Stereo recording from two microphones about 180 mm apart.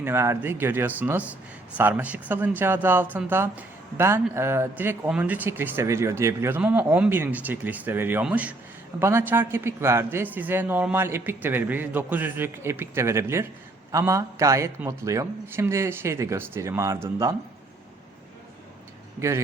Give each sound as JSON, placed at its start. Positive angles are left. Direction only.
{"t": 0.0, "sound": "speech", "side_deg": -15}